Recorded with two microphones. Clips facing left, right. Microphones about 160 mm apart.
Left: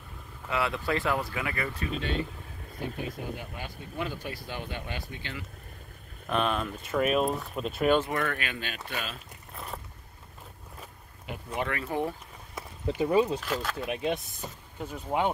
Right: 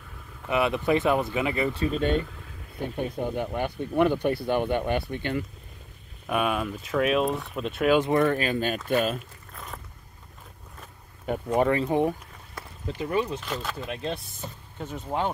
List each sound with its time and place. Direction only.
0.5 s speech: 20° right (ahead or behind)
2.0 s speech: 45° right (ahead or behind)
6.2 s speech: 10° right (ahead or behind)
8.0 s speech: 30° right (ahead or behind); by 9.2 s 45° right (ahead or behind)
11.2 s speech: 40° right (ahead or behind); by 12.2 s 20° right (ahead or behind)
12.9 s speech: 20° left (ahead or behind)
13.4 s speech: centre (ahead or behind)